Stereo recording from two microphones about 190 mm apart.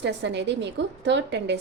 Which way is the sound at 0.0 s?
65° right (ahead or behind).